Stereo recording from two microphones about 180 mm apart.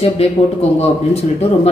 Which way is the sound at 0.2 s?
35° left (ahead or behind).